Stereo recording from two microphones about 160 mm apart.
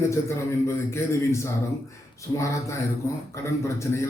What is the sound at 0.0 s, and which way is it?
A man's voice, 15° left (ahead or behind).